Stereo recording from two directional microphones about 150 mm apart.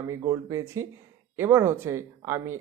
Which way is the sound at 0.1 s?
20° right (ahead or behind).